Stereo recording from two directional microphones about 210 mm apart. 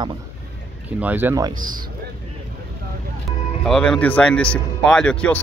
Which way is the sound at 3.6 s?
5° left (ahead or behind).